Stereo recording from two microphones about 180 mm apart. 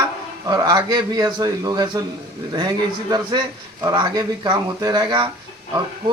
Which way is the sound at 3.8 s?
20° right (ahead or behind).